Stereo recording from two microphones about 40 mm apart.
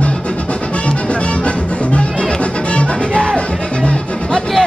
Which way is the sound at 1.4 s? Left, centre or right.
Left.